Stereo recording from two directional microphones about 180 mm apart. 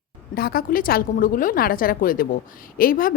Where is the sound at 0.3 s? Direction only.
55° left (ahead or behind).